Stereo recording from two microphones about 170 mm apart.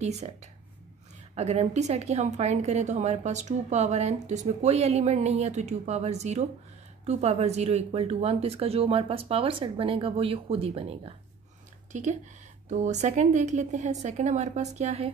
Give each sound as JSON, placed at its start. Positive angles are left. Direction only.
{"t": 0.0, "sound": "a woman's voice", "side_deg": -40}